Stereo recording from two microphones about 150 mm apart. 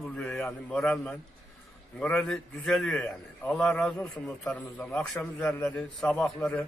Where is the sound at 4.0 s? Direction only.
20° left (ahead or behind).